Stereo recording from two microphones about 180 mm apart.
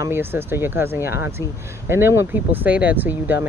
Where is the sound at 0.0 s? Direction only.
15° right (ahead or behind).